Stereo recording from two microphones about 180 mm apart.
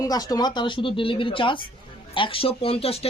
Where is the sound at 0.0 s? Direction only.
20° left (ahead or behind).